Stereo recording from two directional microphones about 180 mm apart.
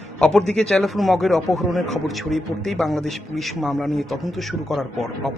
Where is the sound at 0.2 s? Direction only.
5° left (ahead or behind).